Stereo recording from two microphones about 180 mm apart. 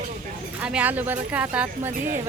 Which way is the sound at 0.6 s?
5° right (ahead or behind).